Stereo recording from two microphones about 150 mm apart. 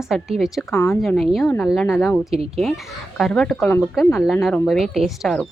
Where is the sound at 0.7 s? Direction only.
15° left (ahead or behind).